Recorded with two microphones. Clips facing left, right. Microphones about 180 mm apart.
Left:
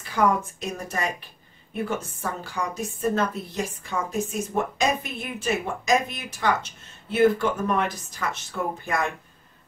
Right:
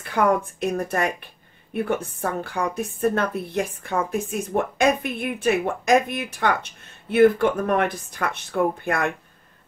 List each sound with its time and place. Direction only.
0.0 s speech: 55° right (ahead or behind)